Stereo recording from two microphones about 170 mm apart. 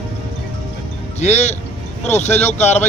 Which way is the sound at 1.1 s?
40° left (ahead or behind).